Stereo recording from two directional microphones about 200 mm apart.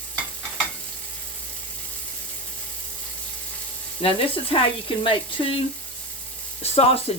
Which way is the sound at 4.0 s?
25° left (ahead or behind).